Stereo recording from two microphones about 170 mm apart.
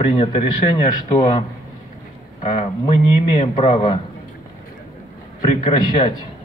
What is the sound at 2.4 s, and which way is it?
A man's voice, 40° left (ahead or behind).